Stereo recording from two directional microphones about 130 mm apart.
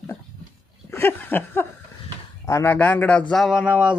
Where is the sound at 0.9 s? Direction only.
15° left (ahead or behind).